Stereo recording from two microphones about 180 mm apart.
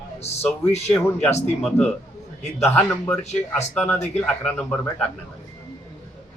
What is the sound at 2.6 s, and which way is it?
Speech, 10° left (ahead or behind).